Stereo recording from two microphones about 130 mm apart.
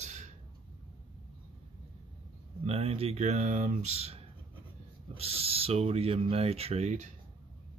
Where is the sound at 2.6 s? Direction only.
50° right (ahead or behind).